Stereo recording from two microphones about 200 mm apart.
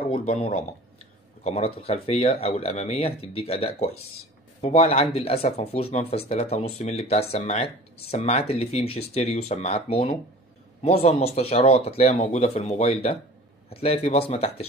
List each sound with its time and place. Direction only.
0.1 s speech: 35° left (ahead or behind)